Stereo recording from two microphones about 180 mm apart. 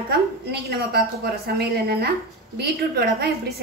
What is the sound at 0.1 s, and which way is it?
A woman's voice, 60° right (ahead or behind).